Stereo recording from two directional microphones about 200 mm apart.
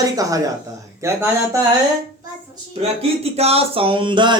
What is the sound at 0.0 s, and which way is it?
Speech, 15° right (ahead or behind).